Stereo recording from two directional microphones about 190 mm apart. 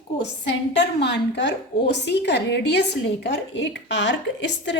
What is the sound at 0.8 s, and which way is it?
A woman's voice, 65° left (ahead or behind).